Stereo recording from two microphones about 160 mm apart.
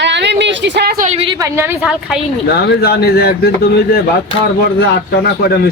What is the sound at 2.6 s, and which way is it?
Speech, 85° left.